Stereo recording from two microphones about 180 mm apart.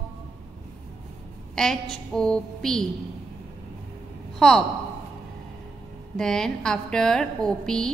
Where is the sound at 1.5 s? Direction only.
Centre (ahead or behind).